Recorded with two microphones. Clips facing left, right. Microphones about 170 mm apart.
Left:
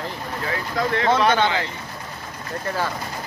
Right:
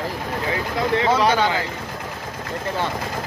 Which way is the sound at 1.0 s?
10° right (ahead or behind).